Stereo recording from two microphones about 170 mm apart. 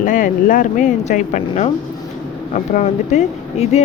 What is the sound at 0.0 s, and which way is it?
Speech, 50° left (ahead or behind).